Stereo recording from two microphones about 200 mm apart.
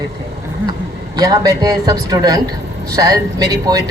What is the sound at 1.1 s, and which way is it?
A man's voice, 20° right (ahead or behind).